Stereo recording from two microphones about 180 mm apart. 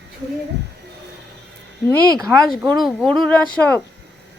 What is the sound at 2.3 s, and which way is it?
Speech, centre (ahead or behind).